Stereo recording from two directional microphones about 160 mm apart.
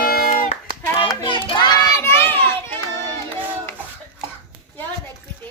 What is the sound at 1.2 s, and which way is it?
Children playing, 30° left (ahead or behind).